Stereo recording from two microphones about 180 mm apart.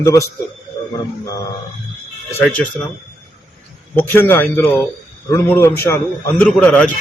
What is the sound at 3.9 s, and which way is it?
A man's voice, 10° left (ahead or behind).